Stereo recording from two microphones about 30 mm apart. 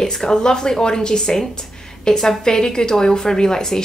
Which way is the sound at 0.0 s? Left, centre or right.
Left.